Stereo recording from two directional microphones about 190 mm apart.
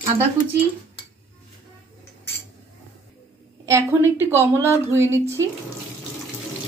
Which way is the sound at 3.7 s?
15° right (ahead or behind).